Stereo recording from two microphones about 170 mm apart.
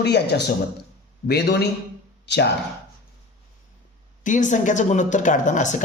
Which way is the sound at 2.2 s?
85° left.